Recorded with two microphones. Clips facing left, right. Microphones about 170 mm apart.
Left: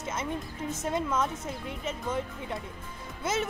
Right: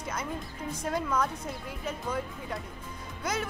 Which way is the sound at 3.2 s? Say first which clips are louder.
Left 2 dB; 25° left (ahead or behind).